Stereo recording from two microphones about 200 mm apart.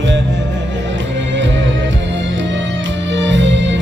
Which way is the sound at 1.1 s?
65° right (ahead or behind).